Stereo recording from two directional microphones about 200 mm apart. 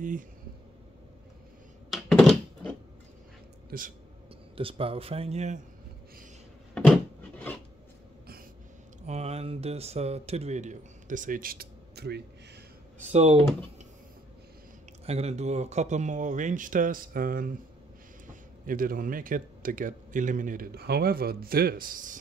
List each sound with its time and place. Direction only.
1.9 s a sound: centre (ahead or behind)
3.7 s speech: 45° right (ahead or behind)
4.6 s speech: 25° right (ahead or behind)
6.7 s rub: 5° left (ahead or behind)
9.0 s speech: 35° right (ahead or behind); by 12.2 s 55° right (ahead or behind)
13.0 s speech: 30° right (ahead or behind)
15.0 s speech: 30° right (ahead or behind)